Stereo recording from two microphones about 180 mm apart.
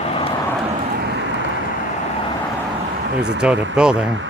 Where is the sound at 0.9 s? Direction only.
70° right (ahead or behind).